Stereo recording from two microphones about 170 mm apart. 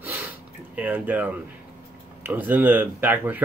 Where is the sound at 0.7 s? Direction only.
10° right (ahead or behind).